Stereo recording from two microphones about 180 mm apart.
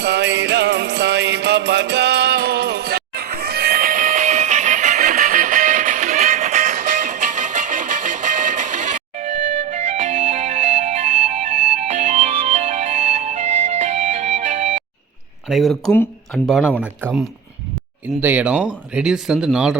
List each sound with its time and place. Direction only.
0.0 s music: 70° right (ahead or behind); by 14.8 s 40° right (ahead or behind)
15.4 s speech: centre (ahead or behind)